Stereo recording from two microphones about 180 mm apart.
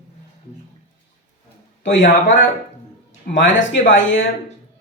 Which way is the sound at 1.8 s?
85° left.